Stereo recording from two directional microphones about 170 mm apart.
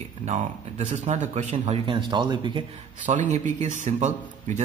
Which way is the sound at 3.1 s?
45° right (ahead or behind).